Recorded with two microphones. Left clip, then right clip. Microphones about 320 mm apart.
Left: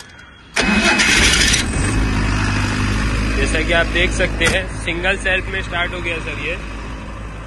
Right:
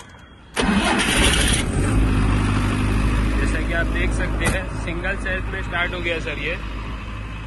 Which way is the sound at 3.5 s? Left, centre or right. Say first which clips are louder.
Left 11 dB; centre.